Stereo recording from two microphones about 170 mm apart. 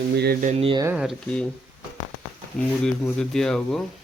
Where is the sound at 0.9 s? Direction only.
5° right (ahead or behind).